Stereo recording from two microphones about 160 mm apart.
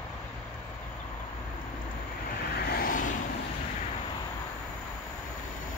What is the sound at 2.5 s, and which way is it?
Vehicle, 70° left (ahead or behind).